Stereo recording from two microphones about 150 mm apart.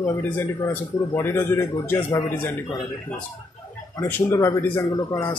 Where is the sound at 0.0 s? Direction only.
10° left (ahead or behind).